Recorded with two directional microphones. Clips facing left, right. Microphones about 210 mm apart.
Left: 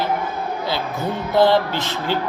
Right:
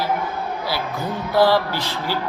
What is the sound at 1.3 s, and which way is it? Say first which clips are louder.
Speech: left 1 dB; 20° left (ahead or behind).